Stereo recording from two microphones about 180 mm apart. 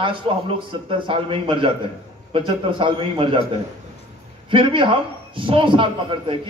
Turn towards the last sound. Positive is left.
turn(degrees=-25)  # may be behind; listen again after turning